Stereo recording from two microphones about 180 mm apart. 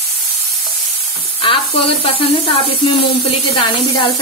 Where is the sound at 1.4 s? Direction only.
30° left (ahead or behind).